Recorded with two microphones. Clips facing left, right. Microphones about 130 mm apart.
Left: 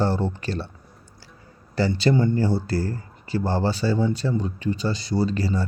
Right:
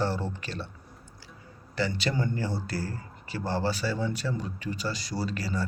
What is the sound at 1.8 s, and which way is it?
A man's voice, 35° left (ahead or behind).